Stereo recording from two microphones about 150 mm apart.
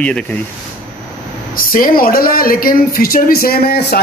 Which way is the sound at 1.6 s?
70° left (ahead or behind).